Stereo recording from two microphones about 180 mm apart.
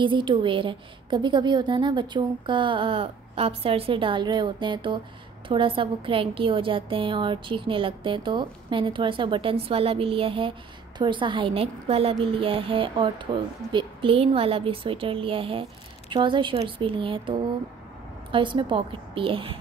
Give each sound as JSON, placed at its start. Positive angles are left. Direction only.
{"t": 0.0, "sound": "a woman's voice", "side_deg": -25}